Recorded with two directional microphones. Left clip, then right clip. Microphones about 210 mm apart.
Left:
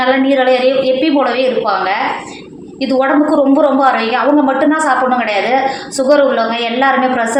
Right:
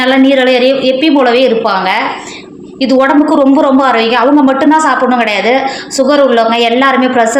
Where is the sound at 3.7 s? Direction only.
50° right (ahead or behind).